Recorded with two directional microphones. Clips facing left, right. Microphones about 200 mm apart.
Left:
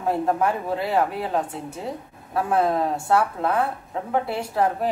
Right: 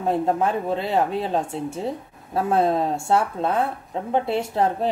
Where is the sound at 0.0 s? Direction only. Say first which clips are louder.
Right 1 dB; 25° right (ahead or behind).